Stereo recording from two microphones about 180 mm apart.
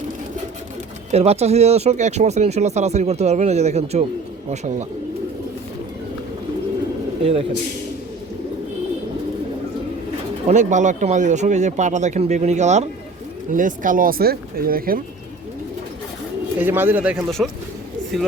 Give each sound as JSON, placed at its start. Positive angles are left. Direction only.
{"t": 1.1, "sound": "speech", "side_deg": -35}
{"t": 7.2, "sound": "speech", "side_deg": -35}
{"t": 10.5, "sound": "speech", "side_deg": -40}
{"t": 16.6, "sound": "speech", "side_deg": -10}